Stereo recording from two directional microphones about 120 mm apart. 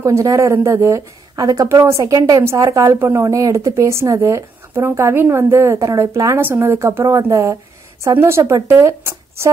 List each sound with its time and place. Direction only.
0.0 s speech: 25° right (ahead or behind)